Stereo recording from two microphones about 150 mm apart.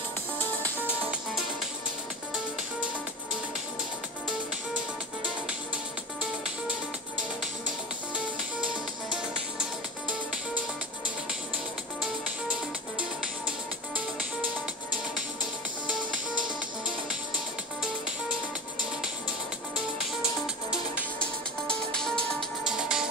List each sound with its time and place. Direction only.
9.1 s music: 5° right (ahead or behind)
13.5 s music: 10° right (ahead or behind)
15.9 s music: 5° right (ahead or behind)
21.6 s music: 5° left (ahead or behind)